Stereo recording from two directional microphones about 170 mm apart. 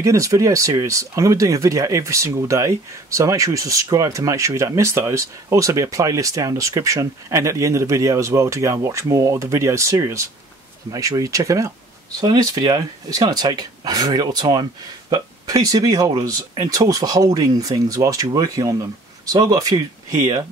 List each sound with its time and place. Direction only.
0.0 s speech: 20° right (ahead or behind)